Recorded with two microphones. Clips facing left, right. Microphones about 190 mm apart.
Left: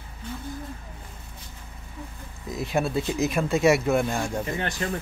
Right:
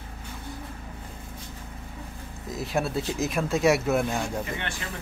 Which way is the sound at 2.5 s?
Centre (ahead or behind).